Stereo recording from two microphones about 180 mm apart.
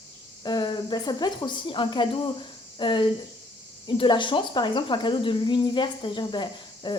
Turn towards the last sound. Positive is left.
turn(degrees=25)  # may be behind; listen again after turning